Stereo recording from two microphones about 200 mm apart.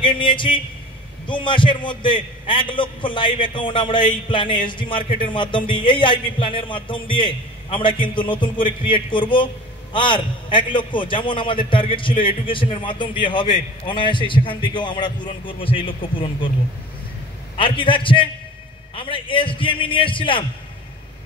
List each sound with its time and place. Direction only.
0.0 s a man's voice: 25° left (ahead or behind)
17.6 s a man's voice: 25° left (ahead or behind)